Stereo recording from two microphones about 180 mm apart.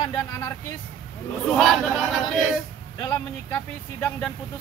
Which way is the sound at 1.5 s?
Centre (ahead or behind).